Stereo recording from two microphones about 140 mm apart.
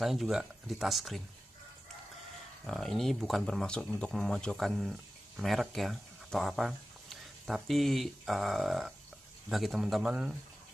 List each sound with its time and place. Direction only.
0.0 s speech: centre (ahead or behind)
2.6 s speech: centre (ahead or behind)